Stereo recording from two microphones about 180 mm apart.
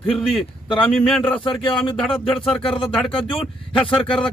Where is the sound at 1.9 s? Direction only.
5° left (ahead or behind).